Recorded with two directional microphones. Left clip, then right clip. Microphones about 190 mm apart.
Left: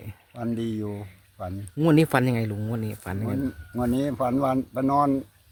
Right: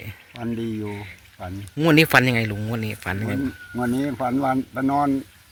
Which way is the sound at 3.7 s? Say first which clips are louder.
Right 1 dB; 20° left (ahead or behind).